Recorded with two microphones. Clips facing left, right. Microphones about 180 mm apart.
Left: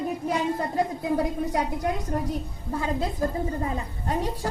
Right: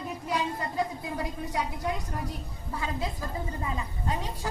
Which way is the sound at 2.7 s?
55° left (ahead or behind).